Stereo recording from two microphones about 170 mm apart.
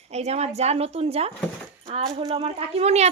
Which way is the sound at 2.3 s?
35° right (ahead or behind).